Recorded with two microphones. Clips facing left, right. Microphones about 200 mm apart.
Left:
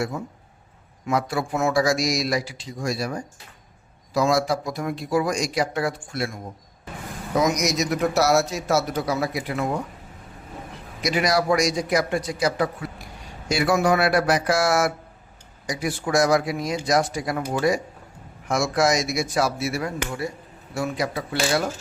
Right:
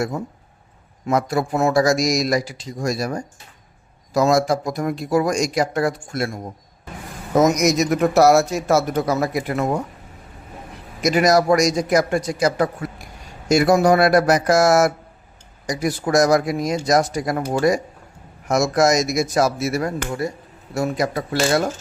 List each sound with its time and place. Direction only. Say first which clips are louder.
1.0 s a man's voice: right 4 dB; 40° right (ahead or behind)
11.0 s a man's voice: right 6 dB; 45° right (ahead or behind)